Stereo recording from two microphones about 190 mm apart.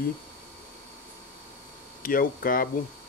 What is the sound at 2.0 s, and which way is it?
Speech, 50° left (ahead or behind).